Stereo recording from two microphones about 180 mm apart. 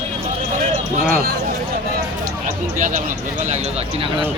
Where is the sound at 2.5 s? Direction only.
45° right (ahead or behind).